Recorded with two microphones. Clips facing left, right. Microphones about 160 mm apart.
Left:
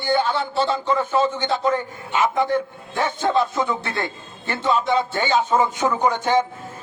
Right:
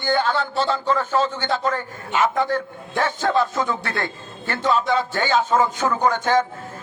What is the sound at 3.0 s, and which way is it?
A man's voice, 15° left (ahead or behind).